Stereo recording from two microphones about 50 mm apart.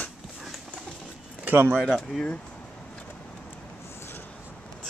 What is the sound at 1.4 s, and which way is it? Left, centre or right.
Speech, right.